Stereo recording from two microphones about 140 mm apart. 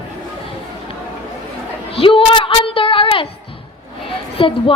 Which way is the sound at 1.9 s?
40° left (ahead or behind).